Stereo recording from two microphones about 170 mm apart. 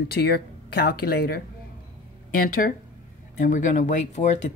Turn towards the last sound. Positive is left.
turn(degrees=45)  # may be behind; listen again after turning